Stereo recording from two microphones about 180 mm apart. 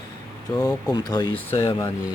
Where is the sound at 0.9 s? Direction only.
25° left (ahead or behind).